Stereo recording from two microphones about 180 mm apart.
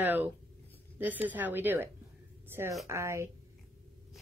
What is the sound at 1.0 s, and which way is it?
A woman's voice, 10° right (ahead or behind).